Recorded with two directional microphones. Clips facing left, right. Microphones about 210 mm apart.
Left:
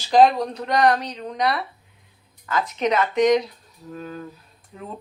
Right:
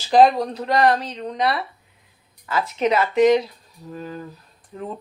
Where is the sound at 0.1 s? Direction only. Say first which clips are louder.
Right 1 dB; centre (ahead or behind).